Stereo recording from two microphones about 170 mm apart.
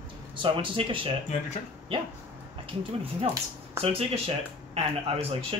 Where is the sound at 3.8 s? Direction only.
35° right (ahead or behind).